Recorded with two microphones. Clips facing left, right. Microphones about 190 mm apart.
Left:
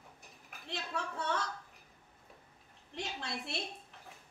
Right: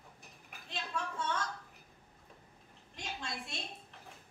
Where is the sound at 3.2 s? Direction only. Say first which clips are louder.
Left 2 dB; 65° left (ahead or behind).